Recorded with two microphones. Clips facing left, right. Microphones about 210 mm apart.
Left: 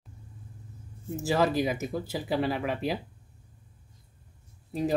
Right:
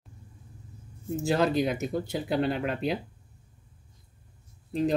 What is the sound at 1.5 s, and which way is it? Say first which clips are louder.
Speech: right 2 dB; 5° left (ahead or behind).